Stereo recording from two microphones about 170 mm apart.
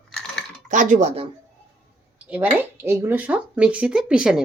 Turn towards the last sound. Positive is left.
turn(degrees=-5)  # may be behind; listen again after turning